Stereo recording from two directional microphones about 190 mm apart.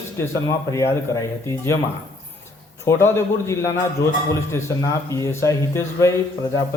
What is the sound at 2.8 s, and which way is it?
Speech, 15° left (ahead or behind).